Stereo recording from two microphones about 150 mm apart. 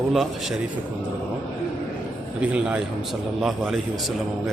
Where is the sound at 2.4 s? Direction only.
5° right (ahead or behind).